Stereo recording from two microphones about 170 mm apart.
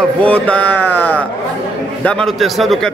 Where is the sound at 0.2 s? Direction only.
10° left (ahead or behind).